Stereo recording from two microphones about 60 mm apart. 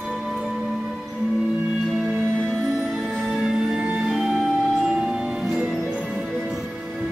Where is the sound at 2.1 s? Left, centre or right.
Right.